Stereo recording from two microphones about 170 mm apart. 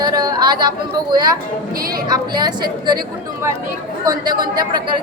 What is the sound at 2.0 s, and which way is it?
Speech, 25° right (ahead or behind).